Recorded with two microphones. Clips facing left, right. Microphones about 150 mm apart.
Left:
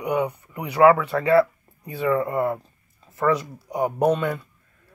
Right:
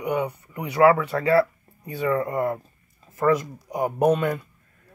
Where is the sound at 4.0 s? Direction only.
10° right (ahead or behind).